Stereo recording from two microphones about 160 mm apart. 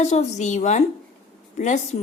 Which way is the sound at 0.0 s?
45° left (ahead or behind).